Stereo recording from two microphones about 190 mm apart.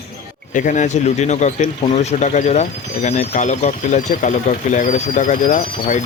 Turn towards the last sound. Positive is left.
turn(degrees=40)  # may be behind; listen again after turning